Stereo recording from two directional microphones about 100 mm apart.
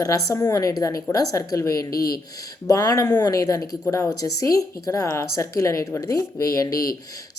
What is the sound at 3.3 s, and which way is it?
Speech, 35° left (ahead or behind).